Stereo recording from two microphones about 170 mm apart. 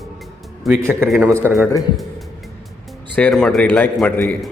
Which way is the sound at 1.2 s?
15° right (ahead or behind).